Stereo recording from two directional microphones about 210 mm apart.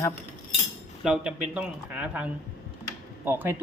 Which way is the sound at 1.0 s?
5° right (ahead or behind).